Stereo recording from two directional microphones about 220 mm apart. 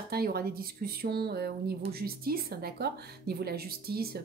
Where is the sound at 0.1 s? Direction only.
45° right (ahead or behind).